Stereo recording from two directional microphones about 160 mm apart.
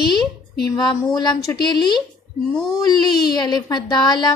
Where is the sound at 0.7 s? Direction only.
25° left (ahead or behind).